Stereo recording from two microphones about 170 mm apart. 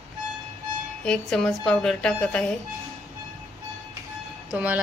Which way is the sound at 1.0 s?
5° left (ahead or behind).